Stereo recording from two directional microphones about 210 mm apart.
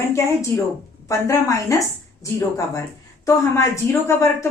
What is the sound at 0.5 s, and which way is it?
Speech, 10° left (ahead or behind).